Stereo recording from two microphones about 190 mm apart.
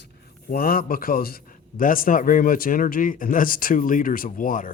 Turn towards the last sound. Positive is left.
turn(degrees=45)  # may be behind; listen again after turning